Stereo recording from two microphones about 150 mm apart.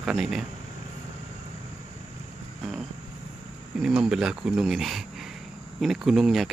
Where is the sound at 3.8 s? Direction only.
5° right (ahead or behind).